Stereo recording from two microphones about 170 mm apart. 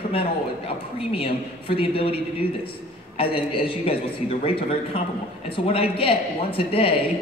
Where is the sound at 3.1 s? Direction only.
35° left (ahead or behind).